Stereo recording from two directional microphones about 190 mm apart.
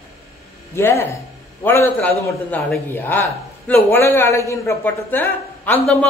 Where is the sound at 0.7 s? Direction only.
15° left (ahead or behind).